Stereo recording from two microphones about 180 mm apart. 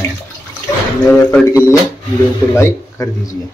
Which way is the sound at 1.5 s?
15° left (ahead or behind).